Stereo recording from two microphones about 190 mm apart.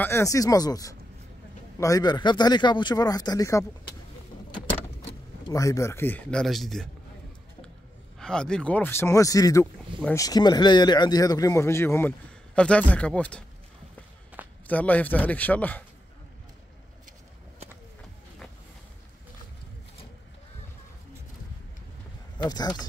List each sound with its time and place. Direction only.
0.0 s a man's voice: 15° left (ahead or behind)
5.5 s speech: 15° left (ahead or behind); by 6.9 s centre (ahead or behind)
8.2 s a man's voice: 5° left (ahead or behind)
14.4 s a sound: 10° right (ahead or behind)
14.7 s speech: 10° left (ahead or behind)
22.4 s a man's voice: 20° left (ahead or behind)